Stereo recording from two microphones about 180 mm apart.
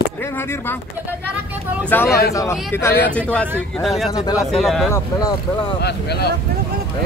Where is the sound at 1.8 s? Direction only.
15° left (ahead or behind).